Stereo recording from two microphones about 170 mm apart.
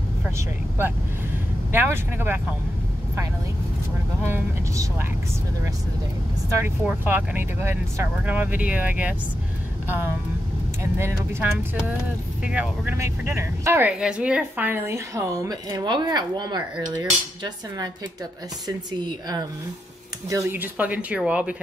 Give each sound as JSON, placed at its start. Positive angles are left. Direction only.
{"t": 0.2, "sound": "speech", "side_deg": -10}
{"t": 4.2, "sound": "speech", "side_deg": -15}
{"t": 6.6, "sound": "speech", "side_deg": -10}
{"t": 10.8, "sound": "speech", "side_deg": -15}
{"t": 12.4, "sound": "speech", "side_deg": -5}